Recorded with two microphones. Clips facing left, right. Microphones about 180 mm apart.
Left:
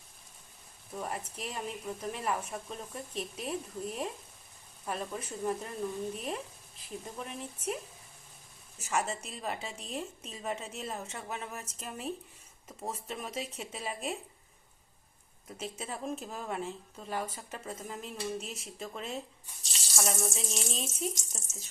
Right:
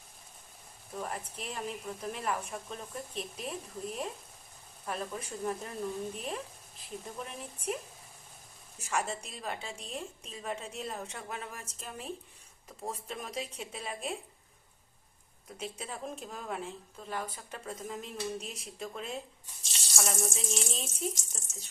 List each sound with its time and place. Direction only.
0.9 s a woman's voice: 5° left (ahead or behind)
8.8 s a woman's voice: centre (ahead or behind)
15.5 s a woman's voice: centre (ahead or behind)